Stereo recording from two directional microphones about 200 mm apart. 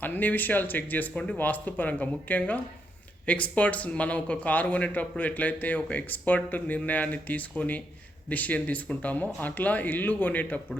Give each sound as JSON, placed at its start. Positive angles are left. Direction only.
{"t": 0.0, "sound": "speech", "side_deg": 10}